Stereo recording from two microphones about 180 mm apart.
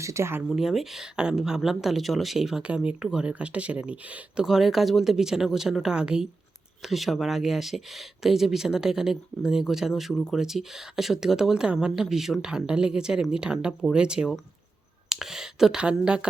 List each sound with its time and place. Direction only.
0.0 s speech: 15° right (ahead or behind)
0.4 s speech: centre (ahead or behind)